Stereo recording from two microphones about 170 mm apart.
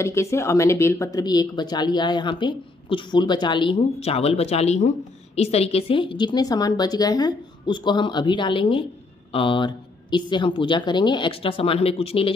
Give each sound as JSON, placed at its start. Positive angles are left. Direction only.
{"t": 0.0, "sound": "speech", "side_deg": 15}